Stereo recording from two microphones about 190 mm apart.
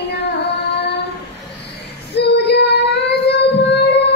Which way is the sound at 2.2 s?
60° left (ahead or behind).